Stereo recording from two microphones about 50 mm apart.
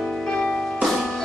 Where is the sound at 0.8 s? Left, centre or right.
Centre.